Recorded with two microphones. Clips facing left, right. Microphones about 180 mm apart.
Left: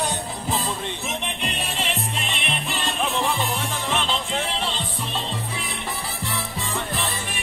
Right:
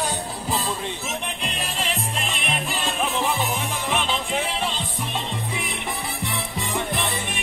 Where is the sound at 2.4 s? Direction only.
45° right (ahead or behind).